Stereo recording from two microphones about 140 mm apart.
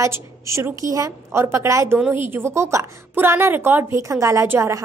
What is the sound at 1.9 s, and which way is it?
A woman's voice, 10° right (ahead or behind).